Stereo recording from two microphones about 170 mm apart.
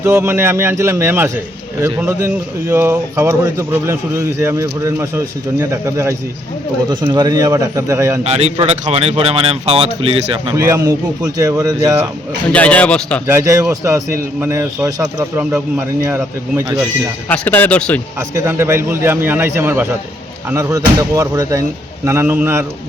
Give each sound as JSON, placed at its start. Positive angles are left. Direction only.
{"t": 0.0, "sound": "a man's voice", "side_deg": -15}
{"t": 8.2, "sound": "speech", "side_deg": -40}
{"t": 10.5, "sound": "a man's voice", "side_deg": -20}
{"t": 12.5, "sound": "speech", "side_deg": 5}
{"t": 13.2, "sound": "speech", "side_deg": -15}
{"t": 17.2, "sound": "speech", "side_deg": 10}
{"t": 18.2, "sound": "a man's voice", "side_deg": -15}